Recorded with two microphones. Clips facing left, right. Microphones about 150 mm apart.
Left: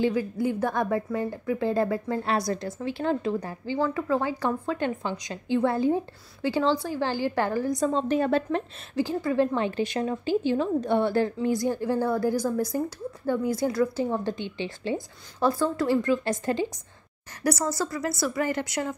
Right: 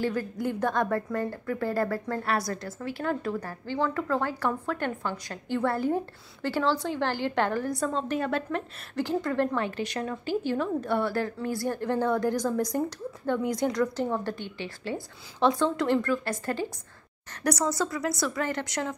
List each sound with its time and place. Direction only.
0.0 s speech: 10° left (ahead or behind)
7.8 s a woman's voice: 30° left (ahead or behind)
8.9 s speech: 10° left (ahead or behind)
9.6 s a woman's voice: 25° left (ahead or behind)
15.4 s speech: 5° left (ahead or behind); by 16.6 s 20° left (ahead or behind)
17.4 s a woman's voice: 5° left (ahead or behind)